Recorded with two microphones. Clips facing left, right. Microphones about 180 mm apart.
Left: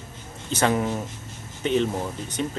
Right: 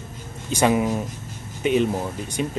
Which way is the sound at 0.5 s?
10° right (ahead or behind).